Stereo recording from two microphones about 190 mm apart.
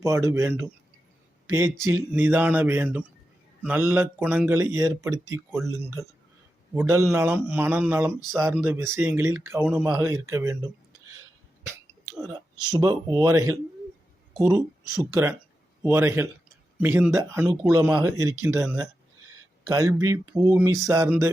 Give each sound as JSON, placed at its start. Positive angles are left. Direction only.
{"t": 0.0, "sound": "speech", "side_deg": -15}
{"t": 6.7, "sound": "speech", "side_deg": -15}
{"t": 12.5, "sound": "speech", "side_deg": -20}